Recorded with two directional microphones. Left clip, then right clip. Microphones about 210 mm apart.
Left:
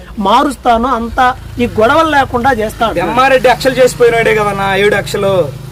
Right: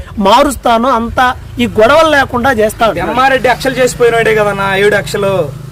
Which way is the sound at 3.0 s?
5° right (ahead or behind).